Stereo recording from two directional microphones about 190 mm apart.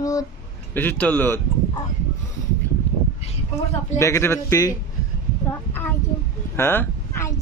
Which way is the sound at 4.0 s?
15° left (ahead or behind).